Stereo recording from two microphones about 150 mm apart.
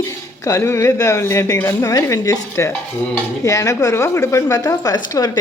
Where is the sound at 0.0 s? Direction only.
20° left (ahead or behind).